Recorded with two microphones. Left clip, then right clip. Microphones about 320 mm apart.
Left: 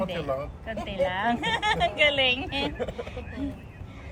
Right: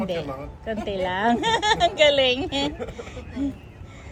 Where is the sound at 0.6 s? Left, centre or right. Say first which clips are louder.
Right 3 dB; centre.